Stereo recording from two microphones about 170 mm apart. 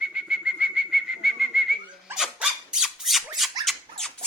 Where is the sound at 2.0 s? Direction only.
5° right (ahead or behind).